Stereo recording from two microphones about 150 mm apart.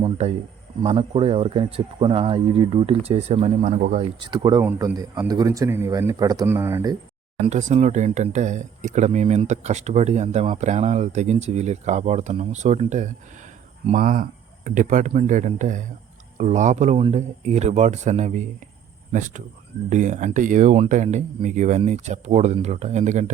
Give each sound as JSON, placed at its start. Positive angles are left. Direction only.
{"t": 0.0, "sound": "speech", "side_deg": -45}
{"t": 4.2, "sound": "speech", "side_deg": -30}
{"t": 4.6, "sound": "a man's voice", "side_deg": -15}
{"t": 7.5, "sound": "speech", "side_deg": -50}
{"t": 13.9, "sound": "speech", "side_deg": -65}